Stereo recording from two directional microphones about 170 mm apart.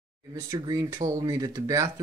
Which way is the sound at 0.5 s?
25° right (ahead or behind).